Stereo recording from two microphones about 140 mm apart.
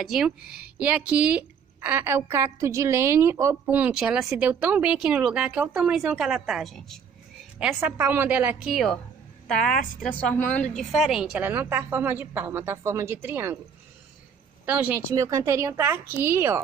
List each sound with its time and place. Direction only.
0.0 s speech: 5° right (ahead or behind)
7.5 s speech: 10° right (ahead or behind)
8.6 s a woman's voice: centre (ahead or behind)
14.7 s speech: 10° right (ahead or behind)
15.1 s speech: 25° right (ahead or behind)